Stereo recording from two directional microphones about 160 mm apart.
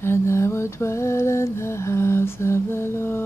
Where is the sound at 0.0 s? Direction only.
15° left (ahead or behind).